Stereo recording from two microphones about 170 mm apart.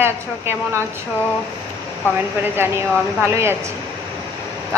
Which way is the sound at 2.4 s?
15° right (ahead or behind).